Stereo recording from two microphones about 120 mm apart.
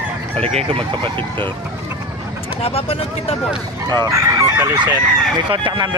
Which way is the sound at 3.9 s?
30° right (ahead or behind).